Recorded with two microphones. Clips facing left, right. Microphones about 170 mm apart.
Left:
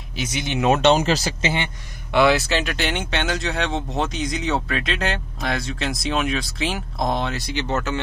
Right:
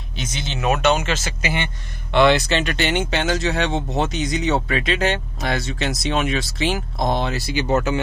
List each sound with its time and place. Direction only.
0.1 s speech: 10° left (ahead or behind); by 1.5 s 35° left (ahead or behind)
2.1 s speech: 5° left (ahead or behind)